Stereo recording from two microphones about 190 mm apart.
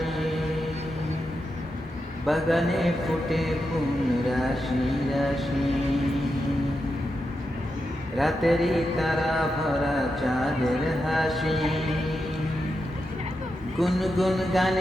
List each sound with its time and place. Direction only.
0.0 s chant: centre (ahead or behind)
2.2 s mantra: centre (ahead or behind)
8.2 s mantra: centre (ahead or behind)
13.7 s mantra: centre (ahead or behind)